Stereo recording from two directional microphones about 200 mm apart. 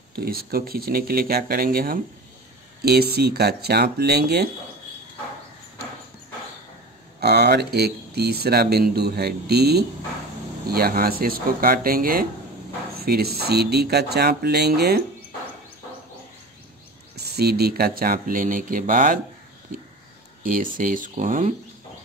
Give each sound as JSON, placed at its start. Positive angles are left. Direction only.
{"t": 0.1, "sound": "speech", "side_deg": -50}
{"t": 7.2, "sound": "speech", "side_deg": -55}
{"t": 17.1, "sound": "speech", "side_deg": -55}
{"t": 20.7, "sound": "speech", "side_deg": -45}